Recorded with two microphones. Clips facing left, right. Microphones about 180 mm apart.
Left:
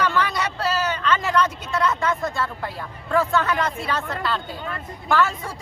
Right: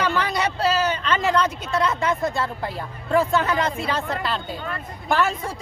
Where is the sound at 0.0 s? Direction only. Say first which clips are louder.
Even; 25° right (ahead or behind).